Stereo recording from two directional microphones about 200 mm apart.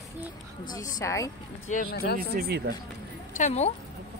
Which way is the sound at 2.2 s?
50° right (ahead or behind).